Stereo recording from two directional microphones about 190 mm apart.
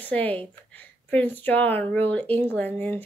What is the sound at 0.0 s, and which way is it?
Speech, 10° left (ahead or behind).